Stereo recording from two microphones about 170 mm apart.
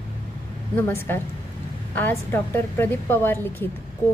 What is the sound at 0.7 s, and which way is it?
A woman's voice, 15° left (ahead or behind).